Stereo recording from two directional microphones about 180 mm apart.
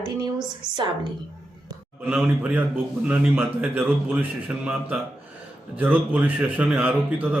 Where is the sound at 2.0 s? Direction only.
10° right (ahead or behind).